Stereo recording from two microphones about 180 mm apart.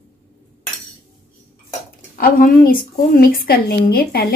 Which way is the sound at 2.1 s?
50° left (ahead or behind).